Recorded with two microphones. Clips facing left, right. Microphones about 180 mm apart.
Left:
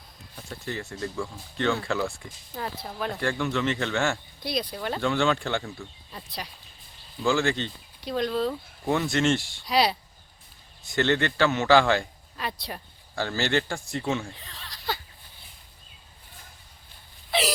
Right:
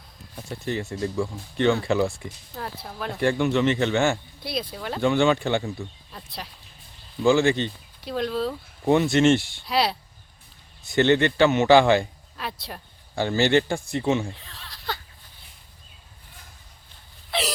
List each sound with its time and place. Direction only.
0.5 s a man's voice: 20° right (ahead or behind)
2.6 s speech: centre (ahead or behind)
3.2 s speech: 20° right (ahead or behind); by 6.5 s centre (ahead or behind)
7.3 s speech: 15° right (ahead or behind)
8.0 s speech: centre (ahead or behind)
8.9 s a man's voice: 20° right (ahead or behind)
9.6 s speech: centre (ahead or behind)
10.9 s a man's voice: 20° right (ahead or behind)
12.4 s speech: centre (ahead or behind)
13.1 s a man's voice: 20° right (ahead or behind)
14.3 s a sound: centre (ahead or behind)
17.3 s wail: centre (ahead or behind)